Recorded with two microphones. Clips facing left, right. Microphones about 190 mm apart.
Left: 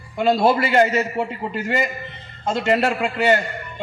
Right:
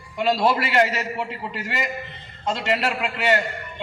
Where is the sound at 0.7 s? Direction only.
45° left (ahead or behind).